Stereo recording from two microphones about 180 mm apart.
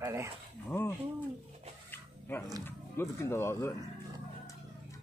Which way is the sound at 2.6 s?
15° left (ahead or behind).